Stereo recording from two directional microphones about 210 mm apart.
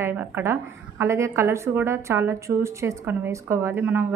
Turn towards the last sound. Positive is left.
turn(degrees=-10)  # may be behind; listen again after turning